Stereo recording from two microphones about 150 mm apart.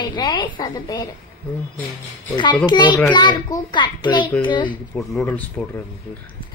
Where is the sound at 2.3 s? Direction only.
30° left (ahead or behind).